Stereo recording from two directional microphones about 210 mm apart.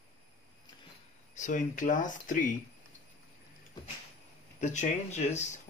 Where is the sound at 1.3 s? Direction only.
35° left (ahead or behind).